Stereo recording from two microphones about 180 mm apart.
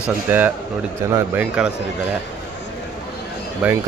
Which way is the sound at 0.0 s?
10° right (ahead or behind).